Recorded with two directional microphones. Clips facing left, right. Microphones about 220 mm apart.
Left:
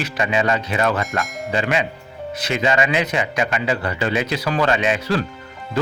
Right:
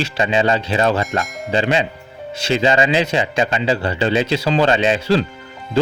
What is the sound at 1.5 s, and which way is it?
Speech, 30° right (ahead or behind).